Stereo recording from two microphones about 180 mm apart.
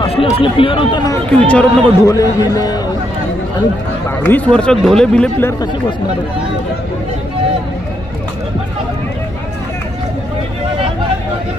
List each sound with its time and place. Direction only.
0.0 s speech: 30° left (ahead or behind)
1.3 s speech: 5° left (ahead or behind)
2.0 s a man's voice: 20° left (ahead or behind)
4.3 s speech: 5° left (ahead or behind)